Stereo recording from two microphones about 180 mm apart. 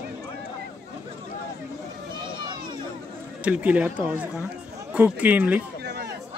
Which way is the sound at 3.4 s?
10° right (ahead or behind).